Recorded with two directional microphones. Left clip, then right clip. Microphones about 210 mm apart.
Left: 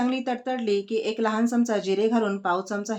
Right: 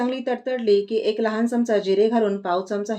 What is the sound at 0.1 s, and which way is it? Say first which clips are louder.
Speech: right 3 dB; 5° left (ahead or behind).